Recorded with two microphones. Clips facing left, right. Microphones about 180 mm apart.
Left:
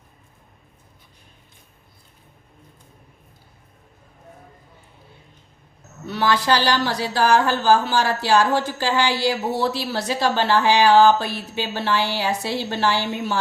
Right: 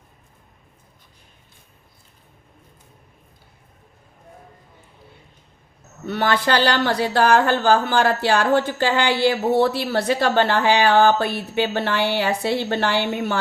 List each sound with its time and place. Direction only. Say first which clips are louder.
6.1 s speech: even; 55° right (ahead or behind)